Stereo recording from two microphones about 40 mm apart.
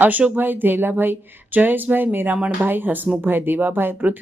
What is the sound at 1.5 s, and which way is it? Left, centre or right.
Speech, right.